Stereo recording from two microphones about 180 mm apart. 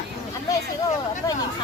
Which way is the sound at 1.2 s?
20° left (ahead or behind).